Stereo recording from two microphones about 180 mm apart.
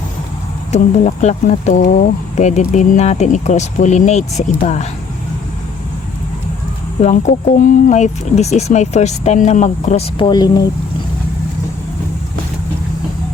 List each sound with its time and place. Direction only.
0.7 s speech: 40° left (ahead or behind)
7.0 s speech: 40° left (ahead or behind)
10.2 s speech: 20° left (ahead or behind)